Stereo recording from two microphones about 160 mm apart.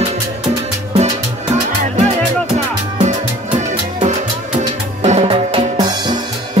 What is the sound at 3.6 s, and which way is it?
Music, 50° right (ahead or behind).